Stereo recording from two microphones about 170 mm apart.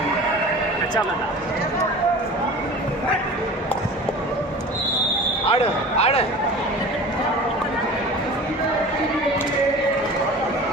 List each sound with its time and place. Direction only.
5.5 s speech: 35° left (ahead or behind)